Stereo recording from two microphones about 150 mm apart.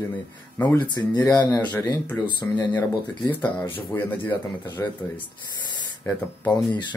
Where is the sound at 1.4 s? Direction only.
10° left (ahead or behind).